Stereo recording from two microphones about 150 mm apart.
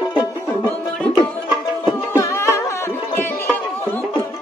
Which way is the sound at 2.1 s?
20° left (ahead or behind).